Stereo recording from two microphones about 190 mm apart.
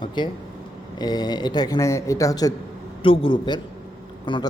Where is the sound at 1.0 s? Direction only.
20° left (ahead or behind).